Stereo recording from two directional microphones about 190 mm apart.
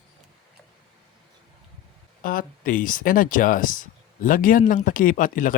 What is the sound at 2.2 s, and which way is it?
Speech, 45° left (ahead or behind).